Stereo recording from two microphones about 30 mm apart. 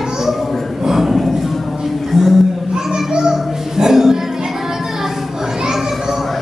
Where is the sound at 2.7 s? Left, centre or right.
Right.